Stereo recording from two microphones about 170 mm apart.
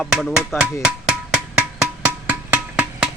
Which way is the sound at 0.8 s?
5° right (ahead or behind).